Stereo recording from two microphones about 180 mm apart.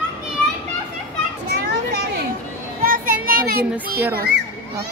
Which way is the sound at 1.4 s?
60° right (ahead or behind).